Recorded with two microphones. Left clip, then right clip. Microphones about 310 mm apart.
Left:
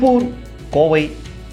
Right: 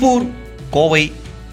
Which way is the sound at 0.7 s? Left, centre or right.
Right.